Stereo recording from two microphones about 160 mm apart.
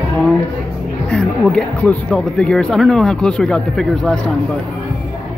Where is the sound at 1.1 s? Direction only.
5° left (ahead or behind).